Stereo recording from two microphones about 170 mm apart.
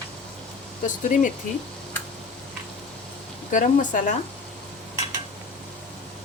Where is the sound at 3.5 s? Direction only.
50° left (ahead or behind).